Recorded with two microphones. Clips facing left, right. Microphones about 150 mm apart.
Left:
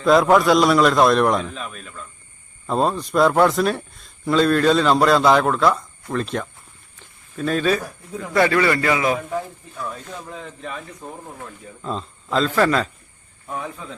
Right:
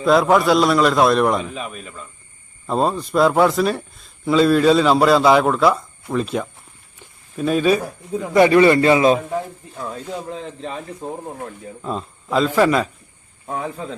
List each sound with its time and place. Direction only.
0.0 s speech: centre (ahead or behind)
7.0 s a sound: 10° right (ahead or behind)
7.8 s speech: 25° right (ahead or behind)
11.8 s speech: 10° right (ahead or behind)
13.5 s speech: 30° right (ahead or behind)